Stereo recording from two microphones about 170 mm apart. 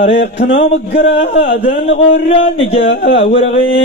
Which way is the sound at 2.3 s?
35° left (ahead or behind).